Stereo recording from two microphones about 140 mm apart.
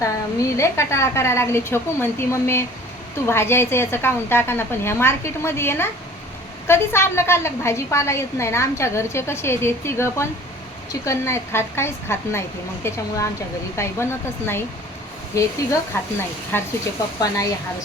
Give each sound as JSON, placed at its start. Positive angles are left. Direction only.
{"t": 0.0, "sound": "a woman's voice", "side_deg": 20}